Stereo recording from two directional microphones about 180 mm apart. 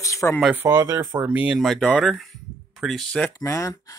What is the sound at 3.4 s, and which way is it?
Speech, 15° left (ahead or behind).